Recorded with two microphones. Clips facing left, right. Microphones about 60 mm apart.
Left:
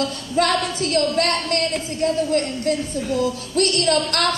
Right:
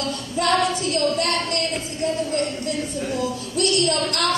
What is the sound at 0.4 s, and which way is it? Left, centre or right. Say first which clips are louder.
Female singing: left 3 dB; left.